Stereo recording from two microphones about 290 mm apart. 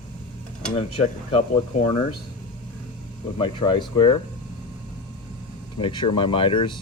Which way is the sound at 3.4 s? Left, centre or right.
Centre.